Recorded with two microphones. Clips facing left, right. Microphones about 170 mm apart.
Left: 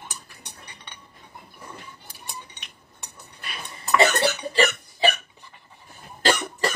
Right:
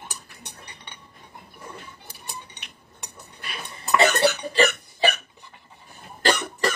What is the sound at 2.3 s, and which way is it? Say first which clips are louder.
Cutlery: right 1 dB; 65° right (ahead or behind).